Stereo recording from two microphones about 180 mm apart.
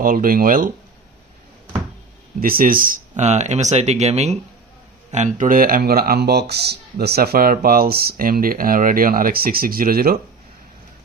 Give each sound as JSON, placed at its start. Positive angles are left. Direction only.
{"t": 0.0, "sound": "speech", "side_deg": -50}
{"t": 2.4, "sound": "speech", "side_deg": -55}